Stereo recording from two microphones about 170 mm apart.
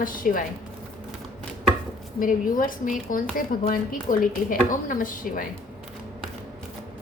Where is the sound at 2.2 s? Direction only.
55° left (ahead or behind).